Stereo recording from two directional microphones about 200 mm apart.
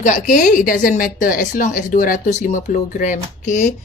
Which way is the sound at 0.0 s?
40° left (ahead or behind).